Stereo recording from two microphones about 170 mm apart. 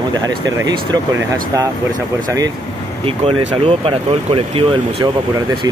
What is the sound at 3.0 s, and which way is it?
Speech, 35° right (ahead or behind).